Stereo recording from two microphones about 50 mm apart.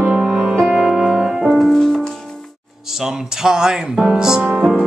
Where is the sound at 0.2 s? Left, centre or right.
Centre.